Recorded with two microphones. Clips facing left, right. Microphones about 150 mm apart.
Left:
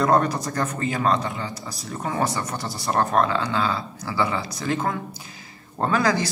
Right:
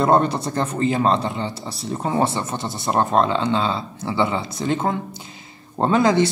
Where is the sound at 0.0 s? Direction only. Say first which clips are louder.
Right 3 dB; 30° right (ahead or behind).